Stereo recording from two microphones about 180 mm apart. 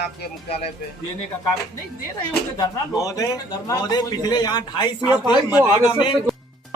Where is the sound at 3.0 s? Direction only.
20° left (ahead or behind).